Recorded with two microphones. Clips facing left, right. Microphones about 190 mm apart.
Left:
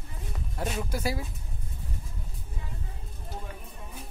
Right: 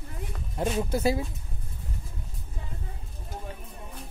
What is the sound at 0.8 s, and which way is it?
Speech, 25° right (ahead or behind).